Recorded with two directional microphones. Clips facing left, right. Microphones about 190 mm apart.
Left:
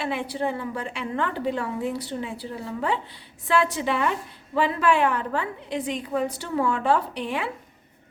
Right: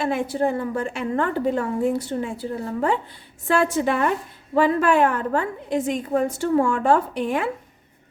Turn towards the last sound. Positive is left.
turn(degrees=-45)  # may be behind; listen again after turning